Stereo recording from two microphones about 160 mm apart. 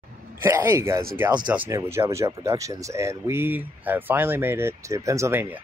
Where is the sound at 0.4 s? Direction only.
15° right (ahead or behind).